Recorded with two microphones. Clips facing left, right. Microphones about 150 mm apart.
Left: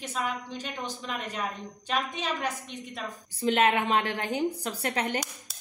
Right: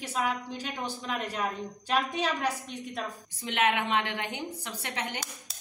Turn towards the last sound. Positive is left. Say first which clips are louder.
# left 6 dB
turn(degrees=40)  # may be behind; listen again after turning